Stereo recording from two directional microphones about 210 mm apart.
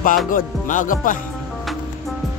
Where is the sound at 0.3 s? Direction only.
40° left (ahead or behind).